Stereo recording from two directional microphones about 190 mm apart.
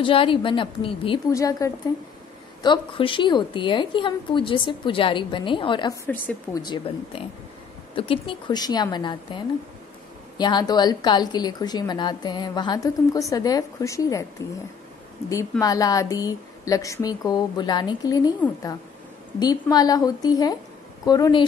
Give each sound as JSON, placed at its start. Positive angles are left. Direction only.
{"t": 0.0, "sound": "a woman's voice", "side_deg": 30}
{"t": 1.3, "sound": "a woman's voice", "side_deg": 15}
{"t": 6.0, "sound": "a woman's voice", "side_deg": 10}
{"t": 6.6, "sound": "a woman's voice", "side_deg": 25}
{"t": 15.6, "sound": "a woman's voice", "side_deg": 20}
{"t": 19.4, "sound": "a woman's voice", "side_deg": 20}